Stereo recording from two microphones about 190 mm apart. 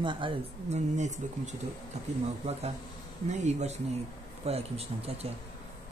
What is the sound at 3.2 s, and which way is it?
Speech, 35° right (ahead or behind).